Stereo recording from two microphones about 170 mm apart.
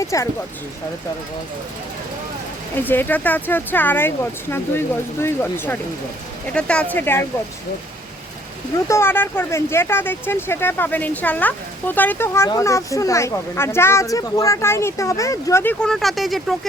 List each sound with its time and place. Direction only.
0.0 s speech: 20° left (ahead or behind)
2.8 s speech: 10° left (ahead or behind)
8.9 s speech: 15° left (ahead or behind)
15.8 s speech: centre (ahead or behind)